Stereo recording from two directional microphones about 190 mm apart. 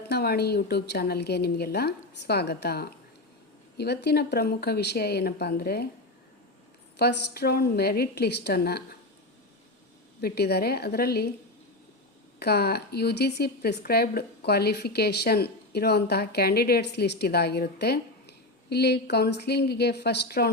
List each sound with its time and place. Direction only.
0.1 s speech: 55° left (ahead or behind)
7.0 s speech: 60° left (ahead or behind)
10.2 s speech: 55° left (ahead or behind)
12.4 s speech: 55° left (ahead or behind)